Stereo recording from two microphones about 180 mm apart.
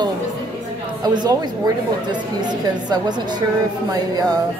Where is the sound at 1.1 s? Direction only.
25° right (ahead or behind).